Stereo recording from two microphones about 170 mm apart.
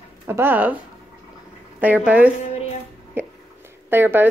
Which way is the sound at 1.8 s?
10° right (ahead or behind).